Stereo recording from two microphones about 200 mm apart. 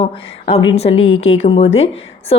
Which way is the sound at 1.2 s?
90° left.